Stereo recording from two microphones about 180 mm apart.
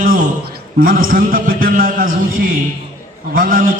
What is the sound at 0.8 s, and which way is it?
A man's voice, 50° right (ahead or behind).